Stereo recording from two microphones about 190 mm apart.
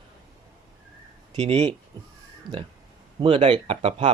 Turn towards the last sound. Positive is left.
turn(degrees=-30)  # may be behind; listen again after turning